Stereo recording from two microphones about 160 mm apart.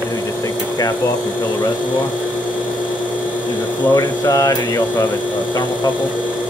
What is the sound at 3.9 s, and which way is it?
Speech, 20° left (ahead or behind).